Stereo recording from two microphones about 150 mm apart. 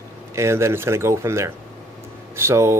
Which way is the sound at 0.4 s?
20° right (ahead or behind).